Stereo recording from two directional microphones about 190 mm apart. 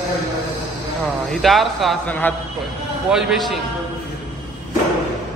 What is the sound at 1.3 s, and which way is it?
A man's voice, centre (ahead or behind).